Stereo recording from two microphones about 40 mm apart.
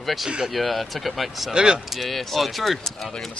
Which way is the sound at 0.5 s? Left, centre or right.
Centre.